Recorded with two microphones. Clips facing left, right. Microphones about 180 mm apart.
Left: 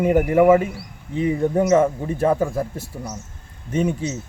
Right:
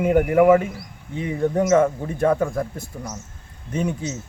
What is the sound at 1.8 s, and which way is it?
A man's voice, 5° left (ahead or behind).